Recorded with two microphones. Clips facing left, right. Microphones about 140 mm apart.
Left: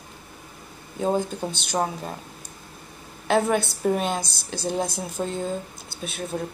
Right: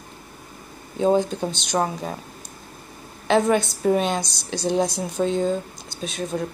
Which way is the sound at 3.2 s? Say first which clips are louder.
Right 3 dB; 10° left (ahead or behind).